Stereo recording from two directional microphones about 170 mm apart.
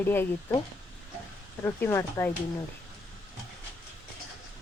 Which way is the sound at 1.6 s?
15° left (ahead or behind).